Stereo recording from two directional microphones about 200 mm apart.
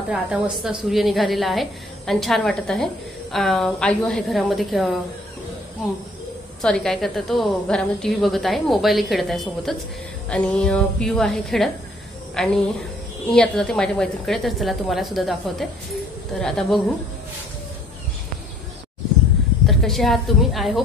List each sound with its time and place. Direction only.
0.1 s a woman's voice: 5° right (ahead or behind)
6.6 s a woman's voice: 5° left (ahead or behind)
19.6 s a woman's voice: centre (ahead or behind)